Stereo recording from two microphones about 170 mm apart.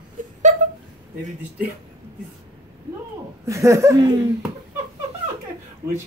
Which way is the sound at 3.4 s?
20° right (ahead or behind).